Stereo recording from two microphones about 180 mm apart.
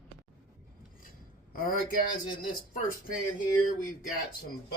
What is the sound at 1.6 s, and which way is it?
Speech, 50° left (ahead or behind).